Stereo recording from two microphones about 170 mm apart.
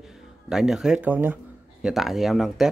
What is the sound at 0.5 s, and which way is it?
Speech, centre (ahead or behind).